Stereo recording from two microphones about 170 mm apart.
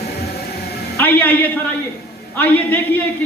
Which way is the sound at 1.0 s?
10° left (ahead or behind).